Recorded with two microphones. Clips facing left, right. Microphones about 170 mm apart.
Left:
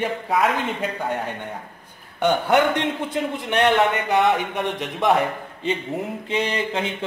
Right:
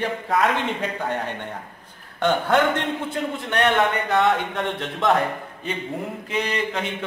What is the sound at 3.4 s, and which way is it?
A man's voice, 20° left (ahead or behind).